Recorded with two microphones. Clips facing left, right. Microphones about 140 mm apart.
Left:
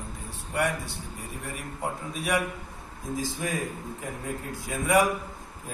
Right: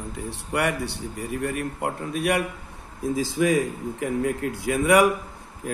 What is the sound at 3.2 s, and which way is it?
Speech, 90° right.